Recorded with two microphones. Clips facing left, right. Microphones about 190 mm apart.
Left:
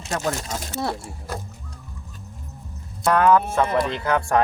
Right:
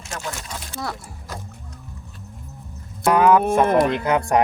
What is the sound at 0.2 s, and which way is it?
Speech, 45° left (ahead or behind).